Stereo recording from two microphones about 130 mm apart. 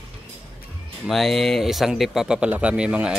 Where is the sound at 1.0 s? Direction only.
Centre (ahead or behind).